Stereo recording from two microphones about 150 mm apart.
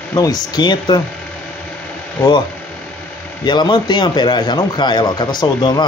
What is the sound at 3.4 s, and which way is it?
A man's voice, 30° left (ahead or behind).